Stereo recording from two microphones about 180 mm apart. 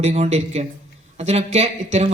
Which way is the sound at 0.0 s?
35° right (ahead or behind).